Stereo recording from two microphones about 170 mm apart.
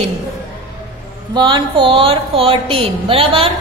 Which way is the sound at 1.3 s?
25° right (ahead or behind).